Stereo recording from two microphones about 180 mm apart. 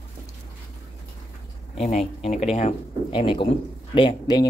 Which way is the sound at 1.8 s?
40° left (ahead or behind).